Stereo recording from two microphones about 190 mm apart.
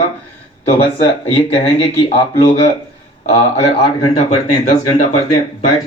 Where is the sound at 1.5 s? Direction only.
30° left (ahead or behind).